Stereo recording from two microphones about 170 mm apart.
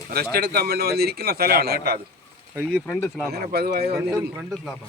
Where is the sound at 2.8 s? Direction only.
10° left (ahead or behind).